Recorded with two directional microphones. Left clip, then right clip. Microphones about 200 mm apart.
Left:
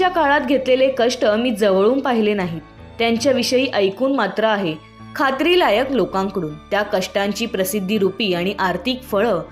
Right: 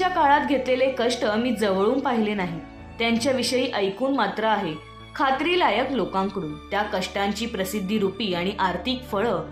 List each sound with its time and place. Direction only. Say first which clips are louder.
0.0 s speech: left 3 dB; 30° left (ahead or behind)